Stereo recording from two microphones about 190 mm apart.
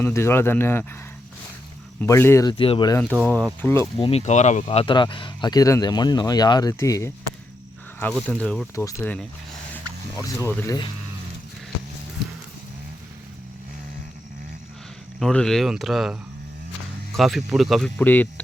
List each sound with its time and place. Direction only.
0.0 s speech: 15° left (ahead or behind)
2.0 s speech: 10° left (ahead or behind)
3.2 s speech: 5° left (ahead or behind)
3.9 s speech: 30° left (ahead or behind)
8.3 s speech: 5° left (ahead or behind)
8.7 s speech: 15° left (ahead or behind)
15.2 s speech: 5° left (ahead or behind)
17.2 s speech: centre (ahead or behind)